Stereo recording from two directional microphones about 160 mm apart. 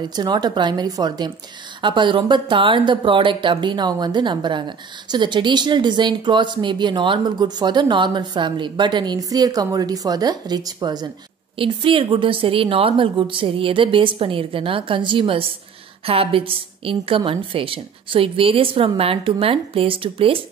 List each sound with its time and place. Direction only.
0.0 s a woman's voice: 25° right (ahead or behind)